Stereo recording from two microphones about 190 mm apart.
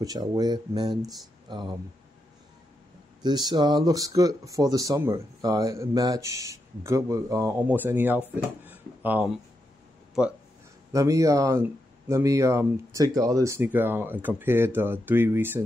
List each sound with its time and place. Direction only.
0.0 s speech: 20° right (ahead or behind)
3.2 s speech: 20° right (ahead or behind); by 10.3 s 5° right (ahead or behind)
10.9 s speech: 15° right (ahead or behind)